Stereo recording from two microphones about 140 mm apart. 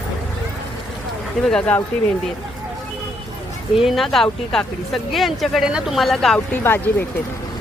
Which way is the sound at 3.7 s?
Centre (ahead or behind).